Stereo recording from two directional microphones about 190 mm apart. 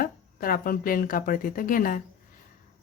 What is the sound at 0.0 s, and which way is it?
Speech, 50° left (ahead or behind).